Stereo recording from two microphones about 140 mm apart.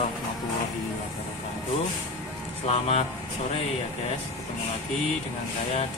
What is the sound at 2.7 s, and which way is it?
Speech, 45° left (ahead or behind).